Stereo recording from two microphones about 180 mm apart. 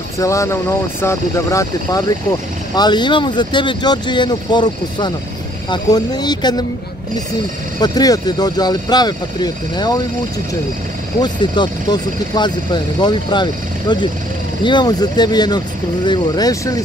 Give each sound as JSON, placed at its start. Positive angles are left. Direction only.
{"t": 0.2, "sound": "speech", "side_deg": 15}
{"t": 7.8, "sound": "speech", "side_deg": 20}
{"t": 11.1, "sound": "speech", "side_deg": 25}